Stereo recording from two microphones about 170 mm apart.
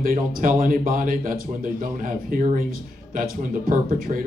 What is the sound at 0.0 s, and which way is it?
Speech, 55° right (ahead or behind).